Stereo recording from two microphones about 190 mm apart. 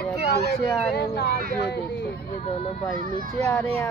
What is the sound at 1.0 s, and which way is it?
Speech, 60° left (ahead or behind).